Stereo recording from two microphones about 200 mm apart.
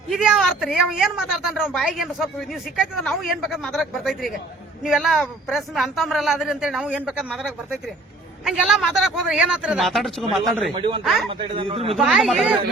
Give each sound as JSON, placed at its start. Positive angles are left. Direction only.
{"t": 0.2, "sound": "a woman's voice", "side_deg": -5}
{"t": 10.8, "sound": "a man's voice", "side_deg": -25}
{"t": 11.0, "sound": "a woman's voice", "side_deg": 0}
{"t": 11.3, "sound": "a man's voice", "side_deg": -25}
{"t": 11.9, "sound": "a woman's voice", "side_deg": 0}